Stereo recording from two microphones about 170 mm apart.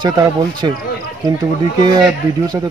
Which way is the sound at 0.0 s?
25° right (ahead or behind).